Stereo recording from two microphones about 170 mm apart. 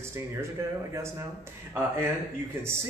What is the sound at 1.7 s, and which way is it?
Speech, 15° right (ahead or behind).